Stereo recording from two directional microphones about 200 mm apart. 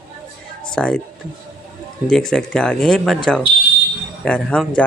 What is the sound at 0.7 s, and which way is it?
Speech, 5° left (ahead or behind).